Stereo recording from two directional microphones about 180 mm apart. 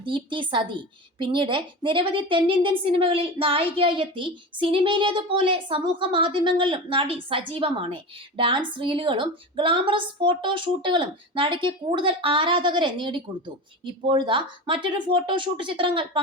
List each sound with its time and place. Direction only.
0.0 s a woman's voice: 25° right (ahead or behind)